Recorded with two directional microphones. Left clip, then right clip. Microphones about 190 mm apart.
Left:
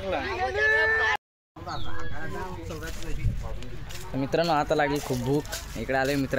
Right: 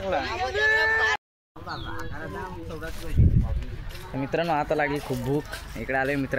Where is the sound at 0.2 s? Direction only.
55° right (ahead or behind).